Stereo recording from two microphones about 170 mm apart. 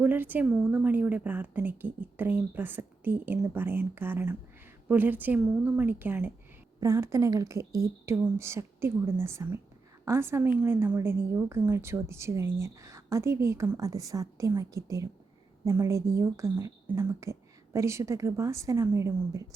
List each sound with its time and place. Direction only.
0.0 s a woman's voice: 10° right (ahead or behind)